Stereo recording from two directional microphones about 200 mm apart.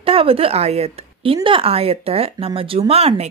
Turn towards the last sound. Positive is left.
turn(degrees=-30)  # may be behind; listen again after turning